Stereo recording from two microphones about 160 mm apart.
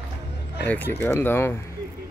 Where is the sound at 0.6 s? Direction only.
10° left (ahead or behind).